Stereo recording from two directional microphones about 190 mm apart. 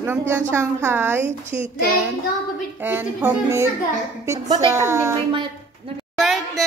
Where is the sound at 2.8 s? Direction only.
10° right (ahead or behind).